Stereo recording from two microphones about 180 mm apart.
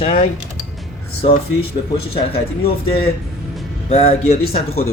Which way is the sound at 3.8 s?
35° left (ahead or behind).